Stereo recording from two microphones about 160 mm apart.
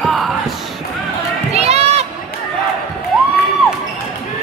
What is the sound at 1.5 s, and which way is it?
Crowd, 40° right (ahead or behind).